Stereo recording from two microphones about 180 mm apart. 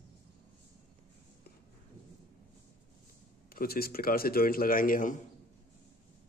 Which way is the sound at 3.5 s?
55° left (ahead or behind).